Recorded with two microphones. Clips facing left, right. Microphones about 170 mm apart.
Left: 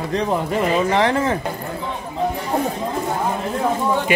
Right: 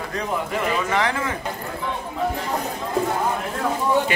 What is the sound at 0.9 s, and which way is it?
Speech, 35° left (ahead or behind).